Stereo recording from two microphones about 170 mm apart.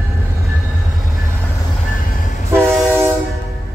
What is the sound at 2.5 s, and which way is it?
Train, 15° right (ahead or behind).